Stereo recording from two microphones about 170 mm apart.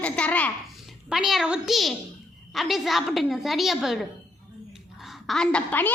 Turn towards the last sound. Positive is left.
turn(degrees=10)  # may be behind; listen again after turning